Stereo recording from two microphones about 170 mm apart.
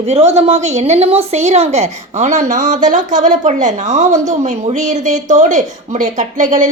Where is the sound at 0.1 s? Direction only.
40° right (ahead or behind).